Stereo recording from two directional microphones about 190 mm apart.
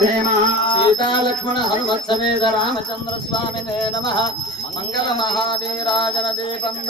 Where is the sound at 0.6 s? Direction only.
25° left (ahead or behind).